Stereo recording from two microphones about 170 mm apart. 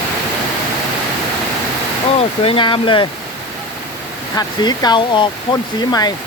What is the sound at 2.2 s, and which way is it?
Speech, 30° left (ahead or behind).